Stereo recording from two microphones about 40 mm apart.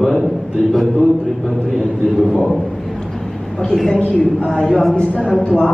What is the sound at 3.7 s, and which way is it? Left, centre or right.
Speech, centre.